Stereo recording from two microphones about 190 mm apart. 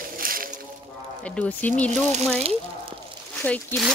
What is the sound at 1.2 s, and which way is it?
Speech, 5° left (ahead or behind).